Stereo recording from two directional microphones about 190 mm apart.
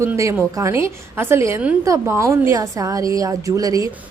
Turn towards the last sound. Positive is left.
turn(degrees=-20)  # may be behind; listen again after turning